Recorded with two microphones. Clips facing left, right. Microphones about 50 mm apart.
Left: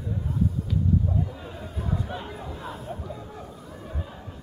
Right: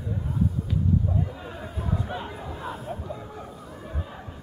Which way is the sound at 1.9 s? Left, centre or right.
Centre.